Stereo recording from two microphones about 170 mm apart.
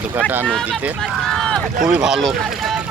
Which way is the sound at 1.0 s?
Centre (ahead or behind).